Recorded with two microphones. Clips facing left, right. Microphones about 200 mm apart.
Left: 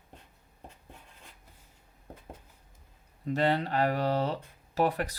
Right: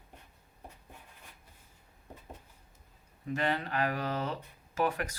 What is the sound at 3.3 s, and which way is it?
Speech, 35° left (ahead or behind).